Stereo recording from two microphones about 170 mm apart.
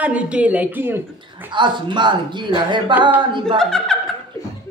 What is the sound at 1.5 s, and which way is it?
Speech, 25° right (ahead or behind).